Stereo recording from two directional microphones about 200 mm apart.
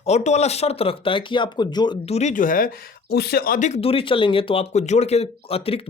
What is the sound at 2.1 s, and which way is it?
Speech, 40° left (ahead or behind).